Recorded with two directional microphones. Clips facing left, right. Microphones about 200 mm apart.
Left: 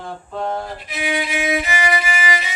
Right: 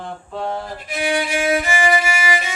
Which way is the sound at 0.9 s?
45° right (ahead or behind).